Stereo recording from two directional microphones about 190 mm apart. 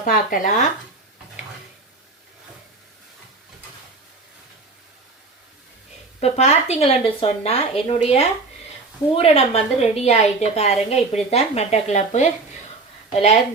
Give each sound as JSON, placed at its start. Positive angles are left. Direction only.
{"t": 0.0, "sound": "speech", "side_deg": 45}
{"t": 6.1, "sound": "a woman's voice", "side_deg": 35}